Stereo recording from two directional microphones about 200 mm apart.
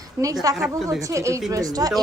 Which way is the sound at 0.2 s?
15° right (ahead or behind).